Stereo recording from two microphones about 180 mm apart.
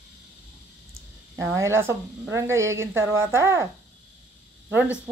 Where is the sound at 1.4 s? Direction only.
15° right (ahead or behind).